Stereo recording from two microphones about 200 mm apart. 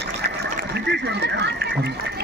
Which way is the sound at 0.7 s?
60° right (ahead or behind).